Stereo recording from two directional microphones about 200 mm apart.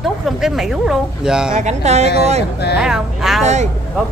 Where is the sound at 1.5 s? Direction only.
35° right (ahead or behind).